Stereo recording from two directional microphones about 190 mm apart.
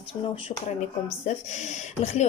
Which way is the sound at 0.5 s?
45° left (ahead or behind).